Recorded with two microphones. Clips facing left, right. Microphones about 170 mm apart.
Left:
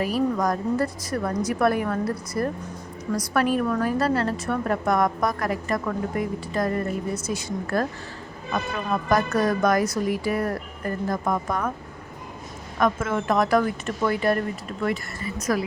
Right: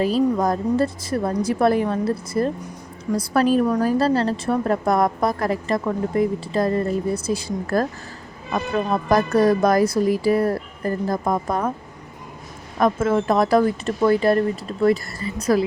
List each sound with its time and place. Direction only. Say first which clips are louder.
0.0 s a woman's voice: right 4 dB; 25° right (ahead or behind)
12.8 s a woman's voice: right 5 dB; 35° right (ahead or behind)